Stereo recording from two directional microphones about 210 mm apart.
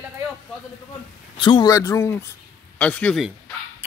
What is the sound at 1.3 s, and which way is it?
Speech, 25° left (ahead or behind).